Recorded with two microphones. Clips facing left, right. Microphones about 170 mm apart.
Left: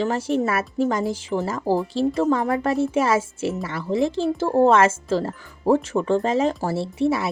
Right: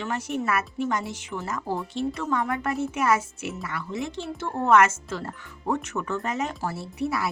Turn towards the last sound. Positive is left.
turn(degrees=25)  # may be behind; listen again after turning